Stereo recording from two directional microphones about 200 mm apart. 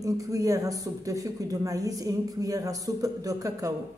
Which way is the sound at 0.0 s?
15° right (ahead or behind).